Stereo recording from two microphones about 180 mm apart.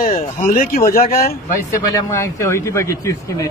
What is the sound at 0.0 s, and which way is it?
Speech, 50° left (ahead or behind).